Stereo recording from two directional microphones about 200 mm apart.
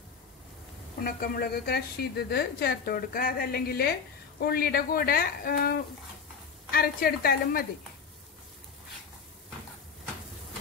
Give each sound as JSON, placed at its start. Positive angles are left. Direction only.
{"t": 1.0, "sound": "a woman's voice", "side_deg": 50}